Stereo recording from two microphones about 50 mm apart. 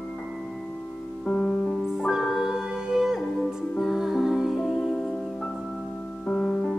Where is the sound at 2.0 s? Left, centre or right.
Centre.